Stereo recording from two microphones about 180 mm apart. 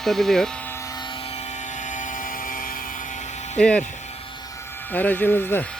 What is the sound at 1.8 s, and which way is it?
Vehicle, 45° left (ahead or behind).